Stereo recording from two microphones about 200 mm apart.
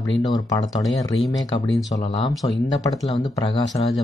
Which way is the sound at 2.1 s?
20° left (ahead or behind).